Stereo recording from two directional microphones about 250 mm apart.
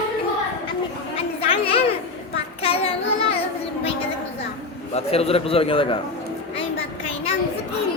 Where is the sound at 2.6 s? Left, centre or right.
Left.